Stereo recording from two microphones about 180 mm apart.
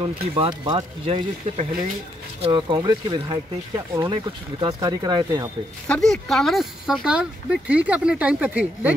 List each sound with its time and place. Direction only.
0.4 s speech: 25° right (ahead or behind)
5.9 s speech: 5° left (ahead or behind)